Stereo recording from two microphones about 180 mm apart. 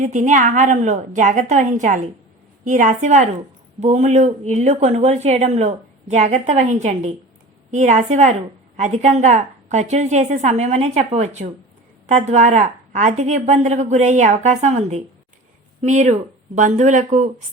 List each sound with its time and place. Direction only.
0.0 s a woman's voice: 45° right (ahead or behind)